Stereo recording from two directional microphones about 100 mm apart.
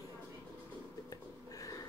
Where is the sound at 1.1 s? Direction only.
35° left (ahead or behind).